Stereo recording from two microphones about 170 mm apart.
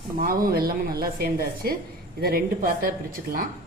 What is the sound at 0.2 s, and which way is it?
Speech, 60° right (ahead or behind).